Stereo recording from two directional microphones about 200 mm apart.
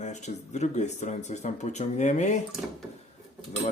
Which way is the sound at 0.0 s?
35° left (ahead or behind).